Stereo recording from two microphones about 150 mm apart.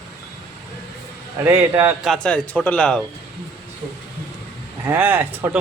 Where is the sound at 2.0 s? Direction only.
5° left (ahead or behind).